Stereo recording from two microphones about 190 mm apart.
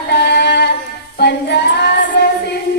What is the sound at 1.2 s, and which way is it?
Music, 60° left (ahead or behind).